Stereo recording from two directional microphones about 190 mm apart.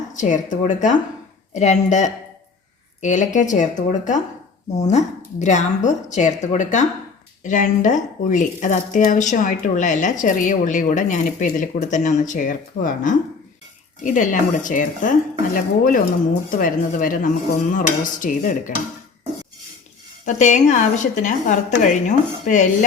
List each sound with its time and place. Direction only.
0.1 s speech: 40° left (ahead or behind)
14.0 s dishes: 45° left (ahead or behind)
20.2 s speech: 40° left (ahead or behind)